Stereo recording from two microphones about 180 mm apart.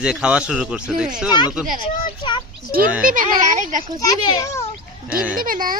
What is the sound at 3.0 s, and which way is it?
Speech, 50° right (ahead or behind).